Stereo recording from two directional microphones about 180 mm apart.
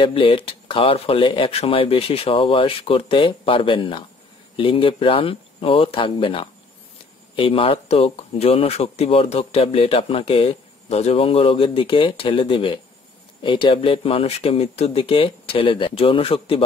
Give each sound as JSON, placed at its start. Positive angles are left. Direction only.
{"t": 0.0, "sound": "speech", "side_deg": 30}